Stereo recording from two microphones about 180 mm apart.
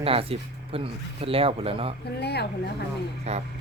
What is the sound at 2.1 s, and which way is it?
Speech, 65° left (ahead or behind).